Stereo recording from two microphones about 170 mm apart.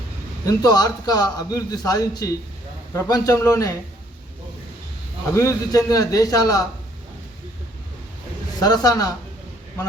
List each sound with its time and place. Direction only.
0.4 s a man's voice: 20° left (ahead or behind)
5.3 s a man's voice: 15° left (ahead or behind)
8.5 s a man's voice: 20° left (ahead or behind)